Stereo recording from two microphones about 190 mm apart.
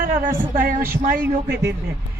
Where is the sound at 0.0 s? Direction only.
45° right (ahead or behind).